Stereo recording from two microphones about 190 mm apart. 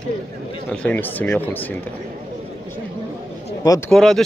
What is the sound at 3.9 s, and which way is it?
Speech, centre (ahead or behind).